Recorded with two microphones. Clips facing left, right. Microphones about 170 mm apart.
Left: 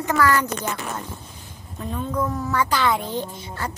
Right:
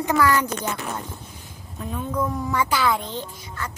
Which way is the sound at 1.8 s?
5° right (ahead or behind).